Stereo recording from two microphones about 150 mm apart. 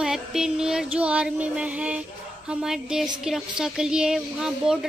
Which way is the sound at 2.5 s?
5° right (ahead or behind).